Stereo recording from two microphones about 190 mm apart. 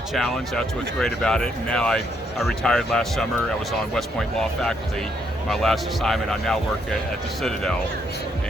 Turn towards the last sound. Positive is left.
turn(degrees=5)  # may be behind; listen again after turning